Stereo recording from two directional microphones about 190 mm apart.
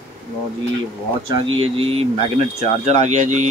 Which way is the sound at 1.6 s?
30° right (ahead or behind).